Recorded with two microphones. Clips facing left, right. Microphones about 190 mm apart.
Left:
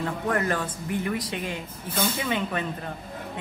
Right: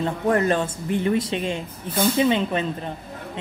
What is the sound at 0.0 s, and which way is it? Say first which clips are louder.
A woman's voice: right 6 dB; 25° right (ahead or behind).